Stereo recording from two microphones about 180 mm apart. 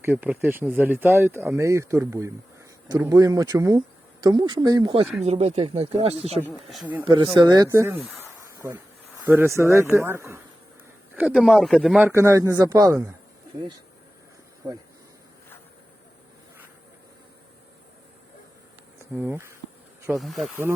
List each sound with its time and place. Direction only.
0.0 s speech: 10° right (ahead or behind); by 5.0 s 25° right (ahead or behind)
5.2 s speech: 35° right (ahead or behind)
6.5 s speech: centre (ahead or behind)
7.0 s speech: 25° right (ahead or behind)
9.2 s speech: 10° right (ahead or behind)
12.0 s speech: 15° right (ahead or behind)
19.1 s speech: 10° right (ahead or behind)
20.1 s speech: centre (ahead or behind)